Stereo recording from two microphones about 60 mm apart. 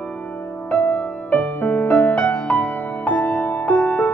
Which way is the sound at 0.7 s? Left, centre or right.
Left.